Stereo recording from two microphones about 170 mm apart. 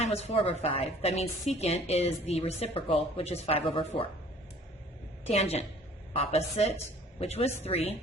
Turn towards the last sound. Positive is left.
turn(degrees=35)  # may be behind; listen again after turning